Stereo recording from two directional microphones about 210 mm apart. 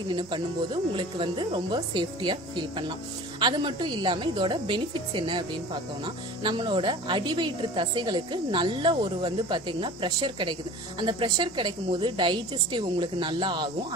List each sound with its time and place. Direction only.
0.1 s a woman's voice: 20° right (ahead or behind)